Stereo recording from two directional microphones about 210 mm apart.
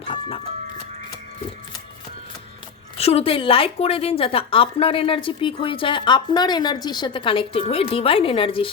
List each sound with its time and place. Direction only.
0.1 s a woman's voice: 25° left (ahead or behind)
3.0 s a woman's voice: 30° left (ahead or behind)